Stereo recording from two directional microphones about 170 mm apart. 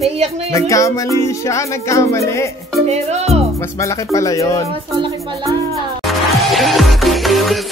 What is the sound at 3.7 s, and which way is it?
Speech, 20° left (ahead or behind).